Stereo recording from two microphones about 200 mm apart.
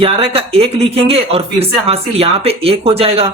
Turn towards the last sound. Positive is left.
turn(degrees=-30)  # may be behind; listen again after turning